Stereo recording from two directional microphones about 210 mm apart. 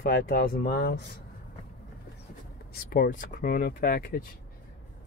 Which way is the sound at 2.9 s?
40° left (ahead or behind).